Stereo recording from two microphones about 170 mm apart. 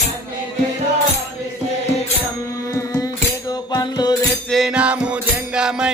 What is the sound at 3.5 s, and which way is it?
Music, 25° left (ahead or behind).